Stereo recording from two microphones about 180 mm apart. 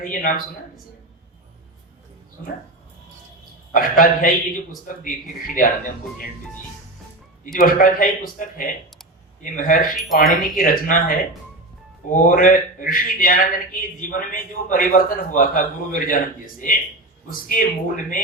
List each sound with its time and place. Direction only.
0.0 s a man's voice: 50° left (ahead or behind)
3.7 s a man's voice: 50° left (ahead or behind)
5.5 s a man's voice: 50° left (ahead or behind)
7.5 s a man's voice: 50° left (ahead or behind)
9.9 s speech: centre (ahead or behind)
10.4 s a man's voice: 50° left (ahead or behind)